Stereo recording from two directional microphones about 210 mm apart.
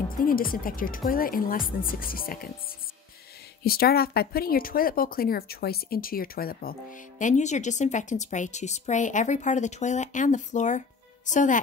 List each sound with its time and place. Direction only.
0.2 s speech: 40° left (ahead or behind)
3.6 s speech: 45° left (ahead or behind)